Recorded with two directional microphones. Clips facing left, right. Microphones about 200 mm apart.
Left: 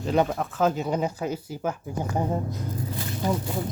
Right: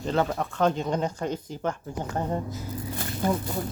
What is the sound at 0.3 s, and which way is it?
Speech, centre (ahead or behind).